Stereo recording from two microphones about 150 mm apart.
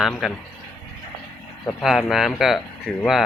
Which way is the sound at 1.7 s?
Centre (ahead or behind).